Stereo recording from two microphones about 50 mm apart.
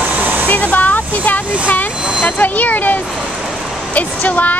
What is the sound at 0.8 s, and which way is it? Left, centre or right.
Speech, left.